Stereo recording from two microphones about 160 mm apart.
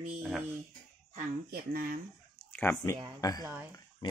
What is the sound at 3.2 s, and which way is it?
Speech, 25° left (ahead or behind).